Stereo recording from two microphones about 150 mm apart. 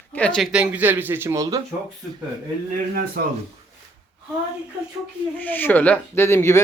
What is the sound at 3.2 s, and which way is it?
Speech, 75° right (ahead or behind).